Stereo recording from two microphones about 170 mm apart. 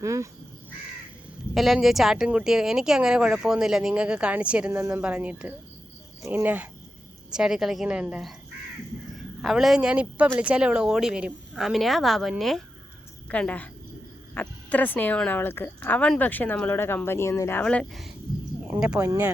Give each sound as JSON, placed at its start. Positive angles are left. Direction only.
{"t": 0.0, "sound": "speech", "side_deg": -20}
{"t": 1.5, "sound": "a woman's voice", "side_deg": 0}
{"t": 18.9, "sound": "speech", "side_deg": -15}